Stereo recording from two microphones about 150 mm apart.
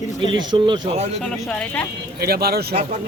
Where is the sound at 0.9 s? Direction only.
45° right (ahead or behind).